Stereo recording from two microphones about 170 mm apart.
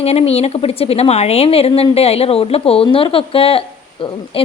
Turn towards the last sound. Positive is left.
turn(degrees=35)  # may be behind; listen again after turning